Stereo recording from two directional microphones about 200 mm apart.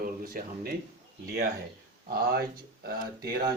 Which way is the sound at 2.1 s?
50° right (ahead or behind).